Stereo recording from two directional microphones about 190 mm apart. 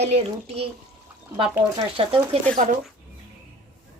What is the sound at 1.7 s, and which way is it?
Speech, 30° right (ahead or behind).